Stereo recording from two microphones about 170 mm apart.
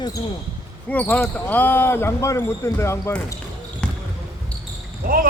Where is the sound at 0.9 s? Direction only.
10° left (ahead or behind).